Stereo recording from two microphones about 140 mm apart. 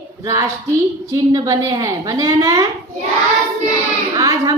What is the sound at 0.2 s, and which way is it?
A woman's voice, 25° right (ahead or behind).